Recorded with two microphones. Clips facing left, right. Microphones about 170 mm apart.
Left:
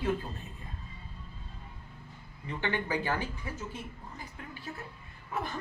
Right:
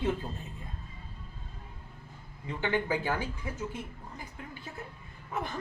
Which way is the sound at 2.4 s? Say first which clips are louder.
Right 3 dB; 10° right (ahead or behind).